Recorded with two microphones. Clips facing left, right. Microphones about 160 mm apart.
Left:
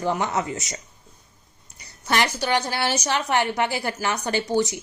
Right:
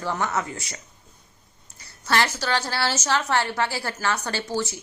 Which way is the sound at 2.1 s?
15° left (ahead or behind).